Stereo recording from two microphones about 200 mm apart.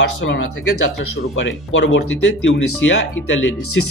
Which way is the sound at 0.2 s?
80° left.